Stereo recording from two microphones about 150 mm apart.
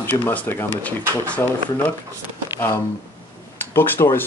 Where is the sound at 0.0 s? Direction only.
15° left (ahead or behind).